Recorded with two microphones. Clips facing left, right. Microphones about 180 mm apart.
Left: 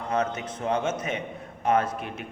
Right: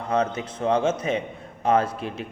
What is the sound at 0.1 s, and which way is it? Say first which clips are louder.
A man's voice: right 3 dB; 30° right (ahead or behind).